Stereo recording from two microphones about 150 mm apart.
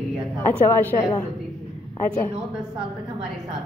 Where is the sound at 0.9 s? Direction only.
25° left (ahead or behind).